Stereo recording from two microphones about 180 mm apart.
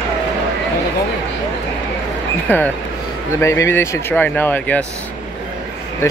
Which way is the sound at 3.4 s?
15° left (ahead or behind).